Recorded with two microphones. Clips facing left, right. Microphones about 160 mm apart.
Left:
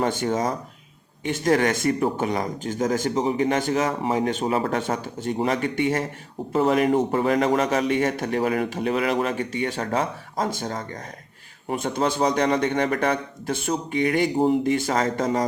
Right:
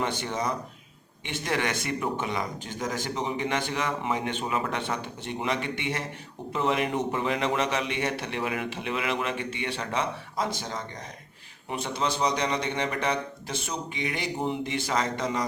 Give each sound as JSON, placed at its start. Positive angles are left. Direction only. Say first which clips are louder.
{"t": 0.0, "sound": "speech", "louder": "left 6 dB", "side_deg": 45}